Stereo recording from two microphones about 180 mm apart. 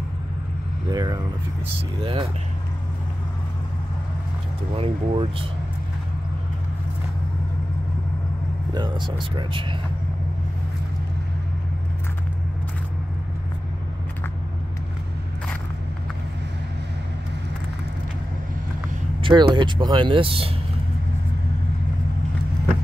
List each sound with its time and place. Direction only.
0.8 s speech: 20° right (ahead or behind)
4.7 s speech: 30° right (ahead or behind)
8.7 s speech: 25° right (ahead or behind)
19.2 s speech: 25° right (ahead or behind)